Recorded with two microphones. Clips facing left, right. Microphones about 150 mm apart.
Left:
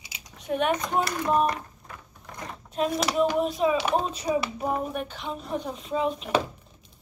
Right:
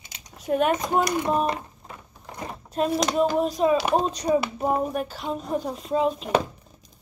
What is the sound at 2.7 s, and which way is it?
Speech, centre (ahead or behind).